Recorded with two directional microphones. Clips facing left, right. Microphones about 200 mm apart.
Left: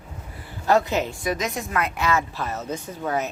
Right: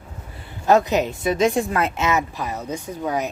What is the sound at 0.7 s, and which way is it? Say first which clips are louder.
A woman's voice: right 3 dB; 20° right (ahead or behind).